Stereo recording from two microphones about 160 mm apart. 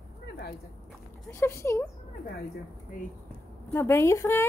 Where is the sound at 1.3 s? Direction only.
15° left (ahead or behind).